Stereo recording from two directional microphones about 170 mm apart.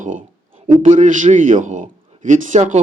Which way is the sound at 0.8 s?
50° right (ahead or behind).